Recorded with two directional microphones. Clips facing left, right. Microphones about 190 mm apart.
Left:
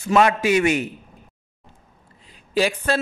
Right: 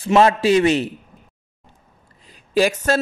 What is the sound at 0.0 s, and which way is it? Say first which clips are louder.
Speech: right 3 dB; 30° right (ahead or behind).